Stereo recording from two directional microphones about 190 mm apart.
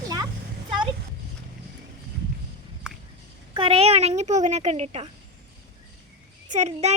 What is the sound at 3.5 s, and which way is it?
Fowl, 30° right (ahead or behind).